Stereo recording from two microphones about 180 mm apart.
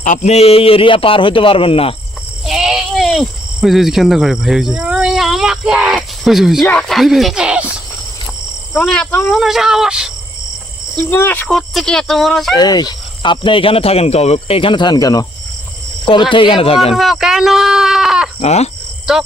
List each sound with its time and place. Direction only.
0.0 s a man's voice: 45° left (ahead or behind)
2.5 s cricket: 5° right (ahead or behind)
6.7 s speech: 5° left (ahead or behind)
8.8 s speech: 10° left (ahead or behind)
11.1 s speech: 10° left (ahead or behind)
12.5 s speech: 20° left (ahead or behind)
16.3 s a man's voice: 30° left (ahead or behind)
16.9 s sheep: centre (ahead or behind)
18.3 s a man's voice: 35° left (ahead or behind)
19.1 s speech: centre (ahead or behind)